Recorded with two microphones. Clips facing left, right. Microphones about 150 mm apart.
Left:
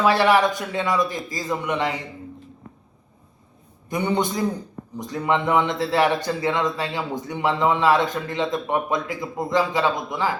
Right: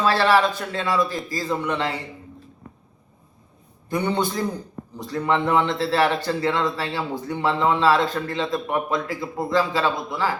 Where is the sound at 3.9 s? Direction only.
15° left (ahead or behind).